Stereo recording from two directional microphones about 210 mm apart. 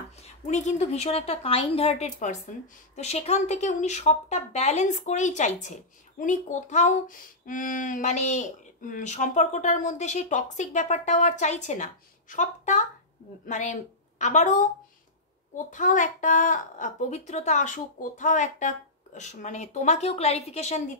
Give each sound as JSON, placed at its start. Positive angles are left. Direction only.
{"t": 0.5, "sound": "a woman's voice", "side_deg": 35}